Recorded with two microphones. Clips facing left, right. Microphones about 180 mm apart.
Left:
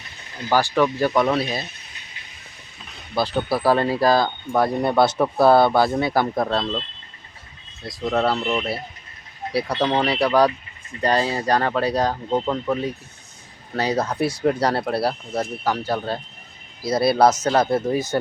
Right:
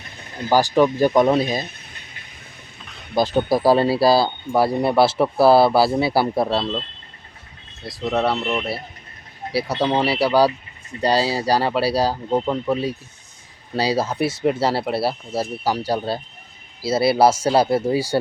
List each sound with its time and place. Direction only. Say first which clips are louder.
0.7 s speech: right 3 dB; 15° right (ahead or behind)
3.3 s speech: right 3 dB; 15° right (ahead or behind)
7.9 s speech: even; centre (ahead or behind)
9.8 s speech: right 1 dB; 10° right (ahead or behind)
11.0 s speech: right 1 dB; 35° right (ahead or behind)
11.3 s speech: right 1 dB; 10° right (ahead or behind)